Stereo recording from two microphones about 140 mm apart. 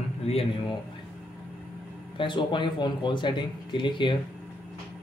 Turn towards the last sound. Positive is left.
turn(degrees=35)  # may be behind; listen again after turning